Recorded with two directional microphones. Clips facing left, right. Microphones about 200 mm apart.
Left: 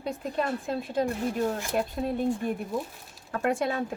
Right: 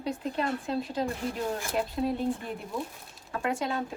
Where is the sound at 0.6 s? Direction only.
50° left (ahead or behind).